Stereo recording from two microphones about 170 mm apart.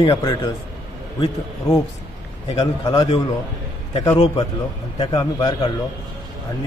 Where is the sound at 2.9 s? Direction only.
35° left (ahead or behind).